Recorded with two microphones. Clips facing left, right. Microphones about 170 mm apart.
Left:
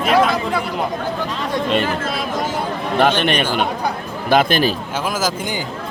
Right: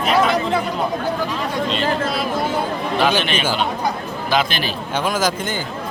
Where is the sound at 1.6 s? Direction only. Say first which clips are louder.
Left 5 dB; 55° left (ahead or behind).